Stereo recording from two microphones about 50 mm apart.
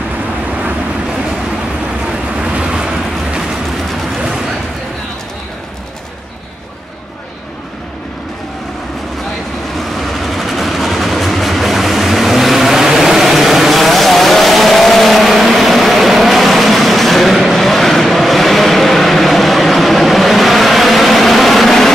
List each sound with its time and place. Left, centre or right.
2.0 s vehicle: centre
9.8 s train: centre